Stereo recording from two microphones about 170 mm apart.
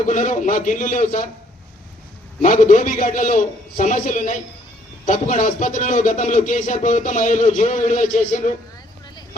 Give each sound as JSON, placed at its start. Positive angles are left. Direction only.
{"t": 0.0, "sound": "speech", "side_deg": 50}
{"t": 2.4, "sound": "speech", "side_deg": 45}